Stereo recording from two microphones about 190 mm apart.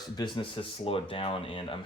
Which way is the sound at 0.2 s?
25° left (ahead or behind).